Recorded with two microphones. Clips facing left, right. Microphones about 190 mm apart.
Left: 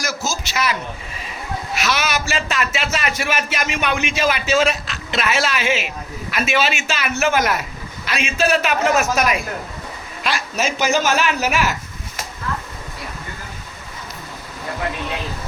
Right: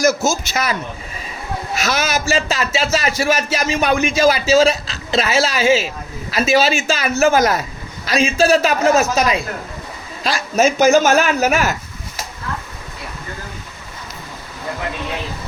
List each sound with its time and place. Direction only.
0.0 s a man's voice: 45° right (ahead or behind)
1.8 s a man's voice: 40° right (ahead or behind); by 9.4 s 25° right (ahead or behind)
10.2 s a man's voice: 45° right (ahead or behind)